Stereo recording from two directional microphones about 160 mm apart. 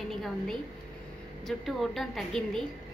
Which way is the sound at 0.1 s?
Centre (ahead or behind).